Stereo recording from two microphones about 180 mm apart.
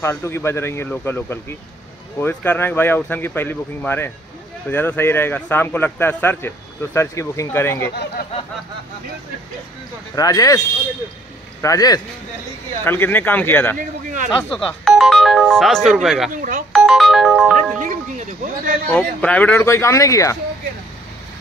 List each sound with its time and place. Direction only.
0.0 s a man's voice: 15° left (ahead or behind)
10.1 s speech: 20° left (ahead or behind)
11.6 s a man's voice: 20° left (ahead or behind)
13.7 s speech: 45° right (ahead or behind)
14.5 s speech: 5° left (ahead or behind)
16.3 s speech: 50° right (ahead or behind)
16.7 s ringtone: centre (ahead or behind)
17.7 s speech: 45° right (ahead or behind)
18.9 s a man's voice: 5° left (ahead or behind)